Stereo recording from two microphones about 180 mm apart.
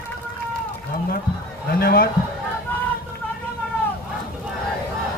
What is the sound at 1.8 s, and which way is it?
Speech, 55° left (ahead or behind).